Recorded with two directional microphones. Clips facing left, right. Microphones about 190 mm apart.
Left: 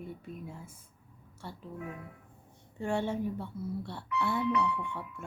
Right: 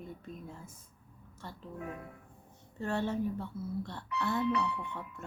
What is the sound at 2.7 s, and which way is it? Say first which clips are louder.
Speech: left 1 dB; 15° left (ahead or behind).